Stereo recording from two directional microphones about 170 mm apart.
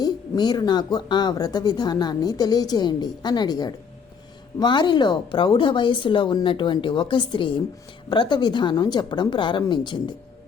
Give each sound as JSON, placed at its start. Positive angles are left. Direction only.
{"t": 0.0, "sound": "speech", "side_deg": 25}